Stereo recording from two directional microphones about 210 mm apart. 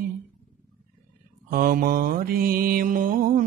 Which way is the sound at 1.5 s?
45° right (ahead or behind).